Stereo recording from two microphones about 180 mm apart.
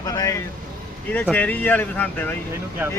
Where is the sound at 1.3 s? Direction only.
10° left (ahead or behind).